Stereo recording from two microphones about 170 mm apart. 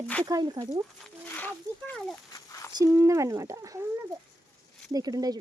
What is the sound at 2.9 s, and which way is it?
Speech, 15° right (ahead or behind).